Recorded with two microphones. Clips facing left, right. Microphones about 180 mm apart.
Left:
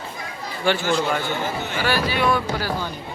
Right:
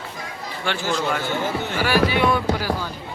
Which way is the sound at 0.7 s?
5° left (ahead or behind).